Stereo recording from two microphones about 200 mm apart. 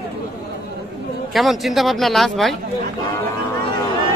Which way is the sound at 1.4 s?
Centre (ahead or behind).